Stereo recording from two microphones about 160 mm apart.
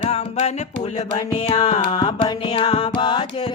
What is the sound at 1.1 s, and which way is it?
Music, 35° left (ahead or behind).